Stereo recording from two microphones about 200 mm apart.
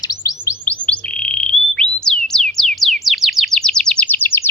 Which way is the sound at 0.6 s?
5° left (ahead or behind).